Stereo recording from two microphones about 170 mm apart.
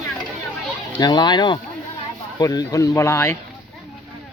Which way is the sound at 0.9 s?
25° left (ahead or behind).